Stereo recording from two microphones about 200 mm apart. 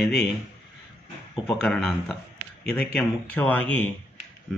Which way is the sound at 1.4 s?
5° left (ahead or behind).